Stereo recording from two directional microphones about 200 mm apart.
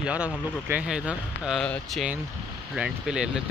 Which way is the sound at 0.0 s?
5° right (ahead or behind).